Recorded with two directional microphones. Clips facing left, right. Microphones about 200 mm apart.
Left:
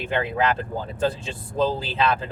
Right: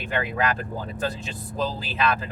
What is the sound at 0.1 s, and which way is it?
Speech, 25° left (ahead or behind).